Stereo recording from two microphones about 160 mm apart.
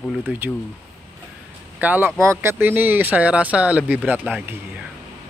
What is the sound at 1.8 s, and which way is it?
Speech, 10° right (ahead or behind).